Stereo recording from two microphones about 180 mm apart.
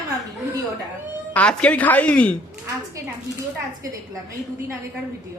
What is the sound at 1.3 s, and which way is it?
Speech, 5° left (ahead or behind).